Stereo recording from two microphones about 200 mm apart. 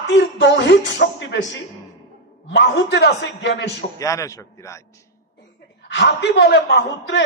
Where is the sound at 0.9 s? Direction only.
65° left (ahead or behind).